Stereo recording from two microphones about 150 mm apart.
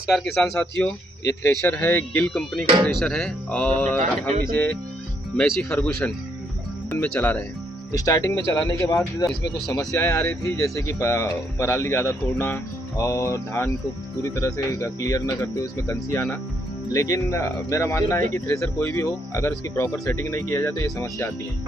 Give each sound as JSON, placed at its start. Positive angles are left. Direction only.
{"t": 0.1, "sound": "speech", "side_deg": 0}
{"t": 5.4, "sound": "speech", "side_deg": 5}
{"t": 8.0, "sound": "speech", "side_deg": 20}